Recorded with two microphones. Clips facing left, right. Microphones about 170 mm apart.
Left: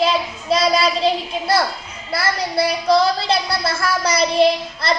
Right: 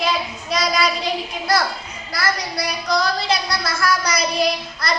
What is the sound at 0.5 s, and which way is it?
A woman's voice, 30° left (ahead or behind).